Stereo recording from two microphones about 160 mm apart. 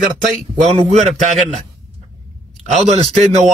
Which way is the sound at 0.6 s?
45° right (ahead or behind).